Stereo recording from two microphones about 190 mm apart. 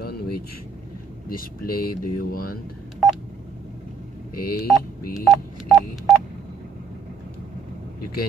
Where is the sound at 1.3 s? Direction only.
50° left (ahead or behind).